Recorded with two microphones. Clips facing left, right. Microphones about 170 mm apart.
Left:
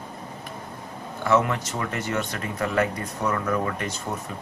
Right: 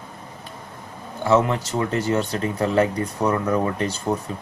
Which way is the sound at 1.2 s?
30° right (ahead or behind).